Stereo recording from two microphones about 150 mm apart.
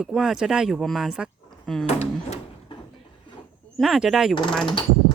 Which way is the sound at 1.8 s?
45° left (ahead or behind).